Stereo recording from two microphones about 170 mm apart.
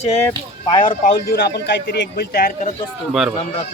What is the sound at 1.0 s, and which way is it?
A man's voice, 65° left (ahead or behind).